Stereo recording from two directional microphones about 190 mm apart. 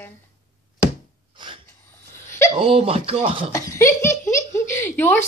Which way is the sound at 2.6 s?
30° right (ahead or behind).